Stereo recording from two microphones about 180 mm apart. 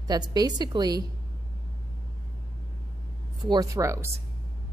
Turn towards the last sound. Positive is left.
turn(degrees=-15)  # may be behind; listen again after turning